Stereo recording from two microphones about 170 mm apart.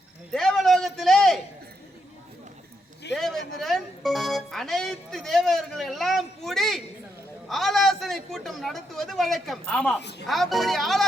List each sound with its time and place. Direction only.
0.3 s a sound: centre (ahead or behind)
3.2 s music: centre (ahead or behind)
7.4 s a man's voice: centre (ahead or behind)
10.0 s speech: 85° left
10.2 s a man's voice: centre (ahead or behind)